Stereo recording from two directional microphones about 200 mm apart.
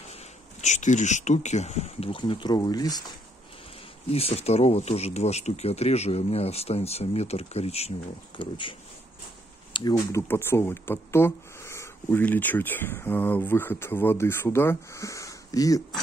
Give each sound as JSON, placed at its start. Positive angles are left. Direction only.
{"t": 0.1, "sound": "speech", "side_deg": 35}
{"t": 4.1, "sound": "speech", "side_deg": 30}